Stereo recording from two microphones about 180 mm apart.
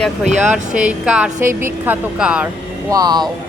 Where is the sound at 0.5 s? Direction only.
5° right (ahead or behind).